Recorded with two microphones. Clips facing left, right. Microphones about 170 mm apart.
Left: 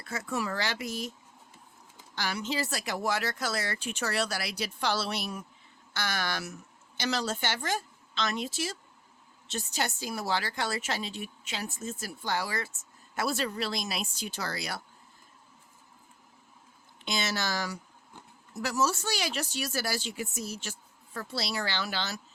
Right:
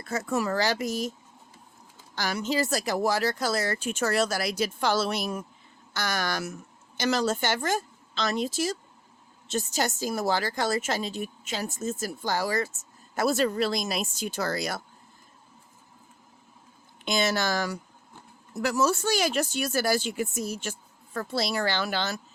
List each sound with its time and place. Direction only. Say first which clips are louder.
0.0 s speech: right 5 dB; 40° right (ahead or behind)
2.1 s a woman's voice: right 5 dB; 40° right (ahead or behind)
17.1 s speech: right 6 dB; 50° right (ahead or behind)